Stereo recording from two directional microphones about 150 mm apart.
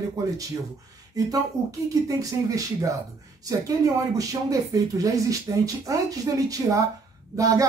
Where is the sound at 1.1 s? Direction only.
25° right (ahead or behind).